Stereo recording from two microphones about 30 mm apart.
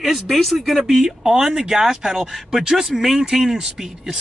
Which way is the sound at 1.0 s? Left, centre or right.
Centre.